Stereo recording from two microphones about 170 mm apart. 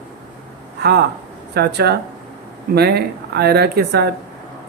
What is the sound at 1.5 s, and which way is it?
Speech, 70° right (ahead or behind).